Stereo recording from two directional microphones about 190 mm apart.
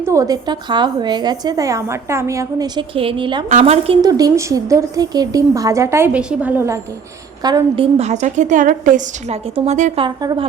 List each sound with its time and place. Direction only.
0.0 s a woman's voice: 15° right (ahead or behind); by 3.9 s 35° right (ahead or behind)
4.0 s a woman's voice: 15° right (ahead or behind)
7.4 s a woman's voice: 20° right (ahead or behind)
7.9 s a woman's voice: 35° right (ahead or behind)
10.0 s a woman's voice: 25° right (ahead or behind)